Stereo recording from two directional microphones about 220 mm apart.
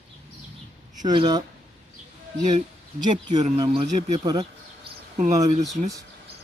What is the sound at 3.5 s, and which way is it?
Speech, 20° right (ahead or behind).